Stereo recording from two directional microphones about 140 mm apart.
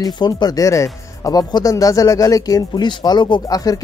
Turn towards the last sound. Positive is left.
turn(degrees=25)  # may be behind; listen again after turning